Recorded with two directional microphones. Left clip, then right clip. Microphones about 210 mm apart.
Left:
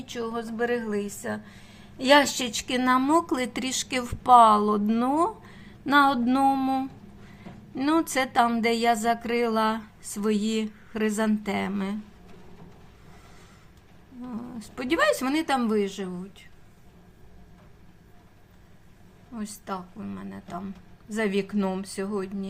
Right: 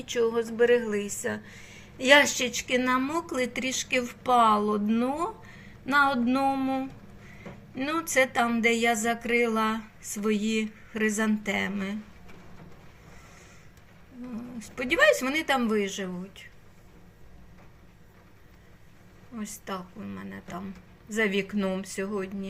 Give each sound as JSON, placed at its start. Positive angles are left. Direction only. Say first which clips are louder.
{"t": 0.0, "sound": "a woman's voice", "louder": "right 6 dB", "side_deg": -5}
{"t": 14.3, "sound": "a woman's voice", "louder": "right 2 dB", "side_deg": 15}
{"t": 19.4, "sound": "a woman's voice", "louder": "left 2 dB", "side_deg": 5}